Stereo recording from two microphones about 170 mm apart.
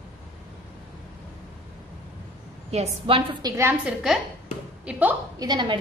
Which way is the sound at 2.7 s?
35° right (ahead or behind).